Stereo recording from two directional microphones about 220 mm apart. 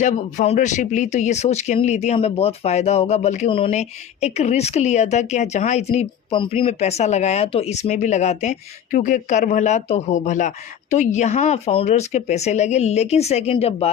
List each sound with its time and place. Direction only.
0.0 s speech: 35° left (ahead or behind)